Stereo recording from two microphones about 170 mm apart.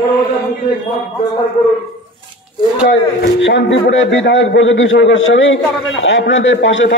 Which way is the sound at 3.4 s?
90° left.